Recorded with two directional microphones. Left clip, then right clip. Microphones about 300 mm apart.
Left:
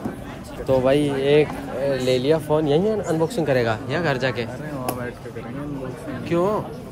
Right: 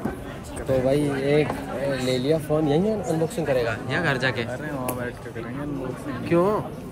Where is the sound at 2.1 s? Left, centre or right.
Centre.